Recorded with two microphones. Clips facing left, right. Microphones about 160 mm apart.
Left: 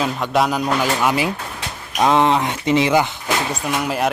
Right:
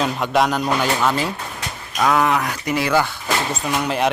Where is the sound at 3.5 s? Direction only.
5° left (ahead or behind).